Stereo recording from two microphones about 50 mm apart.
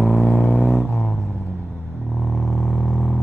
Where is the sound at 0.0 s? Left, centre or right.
Centre.